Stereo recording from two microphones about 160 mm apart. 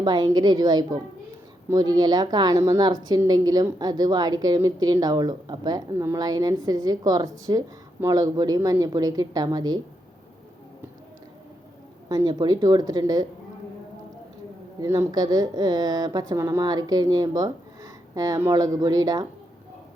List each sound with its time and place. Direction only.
0.0 s a woman's voice: 25° right (ahead or behind)
12.0 s a woman's voice: 25° right (ahead or behind)
14.8 s a woman's voice: 20° right (ahead or behind)